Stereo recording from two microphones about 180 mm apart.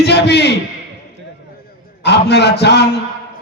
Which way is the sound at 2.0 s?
65° left (ahead or behind).